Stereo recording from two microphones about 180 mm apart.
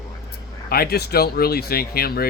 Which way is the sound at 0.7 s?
60° left (ahead or behind).